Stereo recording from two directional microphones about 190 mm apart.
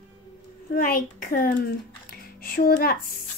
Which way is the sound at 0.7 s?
45° left (ahead or behind).